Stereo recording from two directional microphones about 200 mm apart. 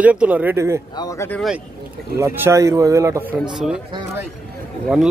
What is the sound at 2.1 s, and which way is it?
A man's voice, 15° right (ahead or behind).